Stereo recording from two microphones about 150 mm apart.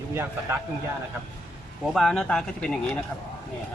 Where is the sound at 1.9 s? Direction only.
5° left (ahead or behind).